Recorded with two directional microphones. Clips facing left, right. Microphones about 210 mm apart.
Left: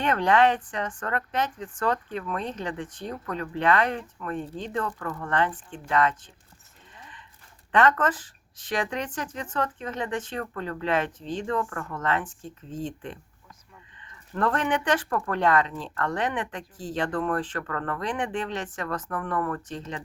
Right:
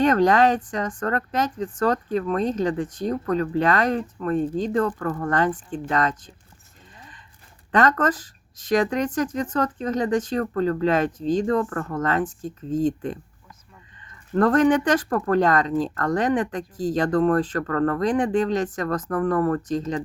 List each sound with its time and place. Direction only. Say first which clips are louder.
0.0 s speech: right 4 dB; 40° right (ahead or behind)
7.7 s speech: right 2 dB; 40° right (ahead or behind)